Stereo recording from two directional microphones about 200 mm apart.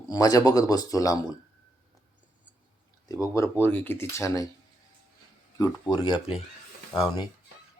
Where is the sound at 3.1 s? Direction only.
15° left (ahead or behind).